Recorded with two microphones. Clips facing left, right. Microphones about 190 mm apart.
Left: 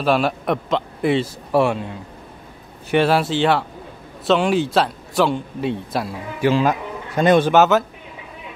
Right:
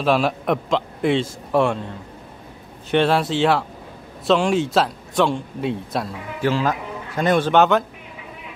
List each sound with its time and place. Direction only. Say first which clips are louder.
0.0 s a man's voice: even; centre (ahead or behind)
2.9 s a man's voice: left 1 dB; 5° left (ahead or behind)
6.4 s a man's voice: left 3 dB; 15° left (ahead or behind)
7.5 s a man's voice: left 1 dB; 5° left (ahead or behind)